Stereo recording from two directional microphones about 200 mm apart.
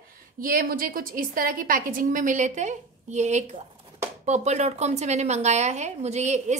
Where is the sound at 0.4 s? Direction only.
45° right (ahead or behind).